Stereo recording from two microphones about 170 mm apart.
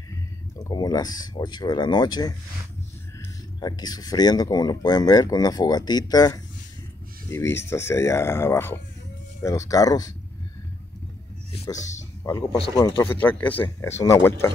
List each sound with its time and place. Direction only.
0.6 s speech: 20° left (ahead or behind)
3.6 s speech: 25° left (ahead or behind)
12.2 s speech: 15° left (ahead or behind)
12.5 s speech: 30° left (ahead or behind)
13.0 s speech: 10° left (ahead or behind)